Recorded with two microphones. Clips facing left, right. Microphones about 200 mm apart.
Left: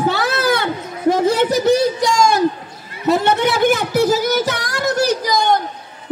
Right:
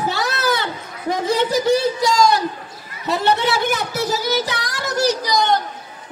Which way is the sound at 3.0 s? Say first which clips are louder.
Left 3 dB; 50° left (ahead or behind).